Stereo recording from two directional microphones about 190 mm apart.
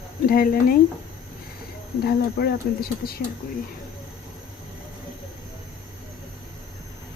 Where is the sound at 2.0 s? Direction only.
55° left (ahead or behind).